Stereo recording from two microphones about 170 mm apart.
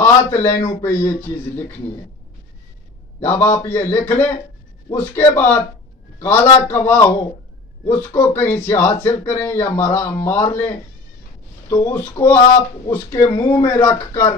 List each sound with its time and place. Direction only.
0.0 s a man's voice: 15° left (ahead or behind)
3.3 s a man's voice: 40° left (ahead or behind)
3.6 s a man's voice: 15° left (ahead or behind)